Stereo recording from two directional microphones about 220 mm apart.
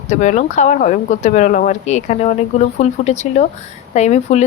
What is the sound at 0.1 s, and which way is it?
A woman's voice, 35° left (ahead or behind).